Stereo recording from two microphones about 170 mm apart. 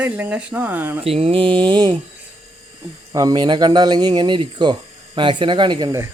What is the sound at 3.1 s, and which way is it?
Speech, 25° right (ahead or behind).